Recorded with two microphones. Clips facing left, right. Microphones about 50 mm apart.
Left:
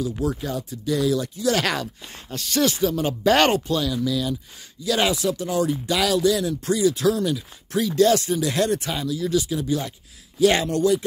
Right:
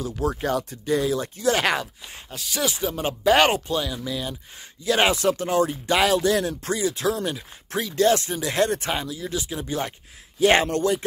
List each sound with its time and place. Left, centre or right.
0.2 s speech: right
0.5 s speech: right
0.8 s speech: right
1.4 s speech: right
2.3 s speech: centre
2.8 s speech: right
3.3 s speech: centre
3.6 s speech: right